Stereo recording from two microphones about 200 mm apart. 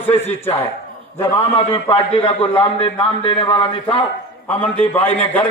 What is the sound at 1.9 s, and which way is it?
A man's voice, 25° left (ahead or behind).